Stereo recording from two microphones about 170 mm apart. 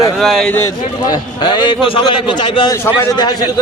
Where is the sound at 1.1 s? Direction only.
25° left (ahead or behind).